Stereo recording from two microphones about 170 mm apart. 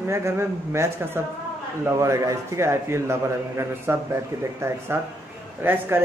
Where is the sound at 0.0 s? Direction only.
15° right (ahead or behind).